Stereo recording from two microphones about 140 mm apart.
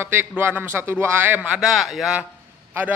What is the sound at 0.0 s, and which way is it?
A man's voice, 15° right (ahead or behind).